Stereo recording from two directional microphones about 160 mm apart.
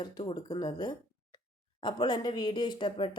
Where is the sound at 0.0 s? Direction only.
30° left (ahead or behind).